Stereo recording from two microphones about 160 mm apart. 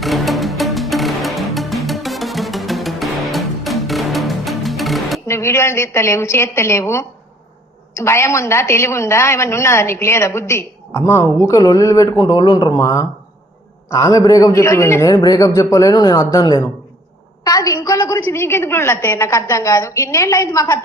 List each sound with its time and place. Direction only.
0.0 s music: centre (ahead or behind)
5.3 s a woman's voice: 15° left (ahead or behind)